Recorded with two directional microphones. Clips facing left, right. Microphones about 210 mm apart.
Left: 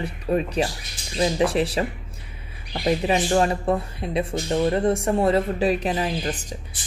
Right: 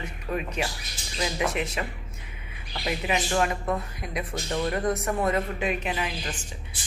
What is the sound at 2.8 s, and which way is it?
Speech, 35° left (ahead or behind).